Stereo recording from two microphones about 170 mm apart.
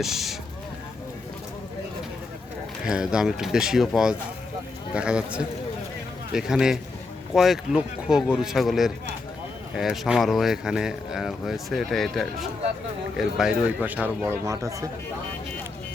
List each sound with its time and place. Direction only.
0.0 s speech: centre (ahead or behind)
2.8 s a man's voice: 5° right (ahead or behind)